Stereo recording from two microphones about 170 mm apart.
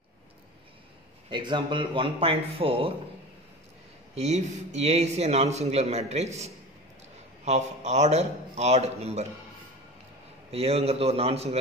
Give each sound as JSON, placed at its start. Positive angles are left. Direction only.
{"t": 1.3, "sound": "speech", "side_deg": -30}
{"t": 4.1, "sound": "a man's voice", "side_deg": -40}
{"t": 10.5, "sound": "a man's voice", "side_deg": -35}